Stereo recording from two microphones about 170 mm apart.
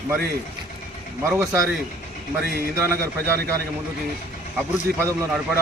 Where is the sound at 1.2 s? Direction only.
15° right (ahead or behind).